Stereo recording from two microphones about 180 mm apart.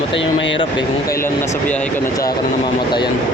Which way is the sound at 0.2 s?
90° left.